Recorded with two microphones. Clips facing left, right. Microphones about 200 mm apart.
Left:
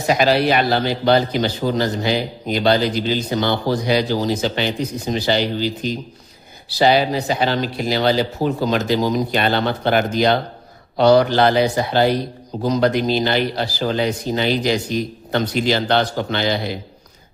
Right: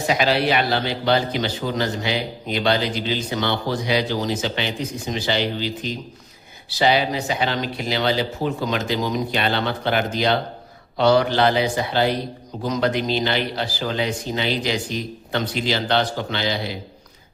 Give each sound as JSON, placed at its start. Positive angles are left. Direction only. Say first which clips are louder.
{"t": 0.1, "sound": "a man's voice", "louder": "left 4 dB", "side_deg": 45}